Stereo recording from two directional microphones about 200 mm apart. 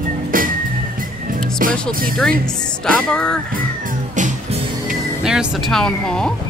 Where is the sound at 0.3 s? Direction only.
45° right (ahead or behind).